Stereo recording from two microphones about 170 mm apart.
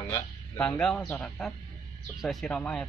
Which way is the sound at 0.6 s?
5° left (ahead or behind).